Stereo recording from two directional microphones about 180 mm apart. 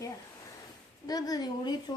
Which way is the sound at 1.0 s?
20° left (ahead or behind).